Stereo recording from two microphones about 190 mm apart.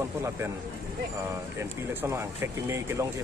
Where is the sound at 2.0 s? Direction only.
15° right (ahead or behind).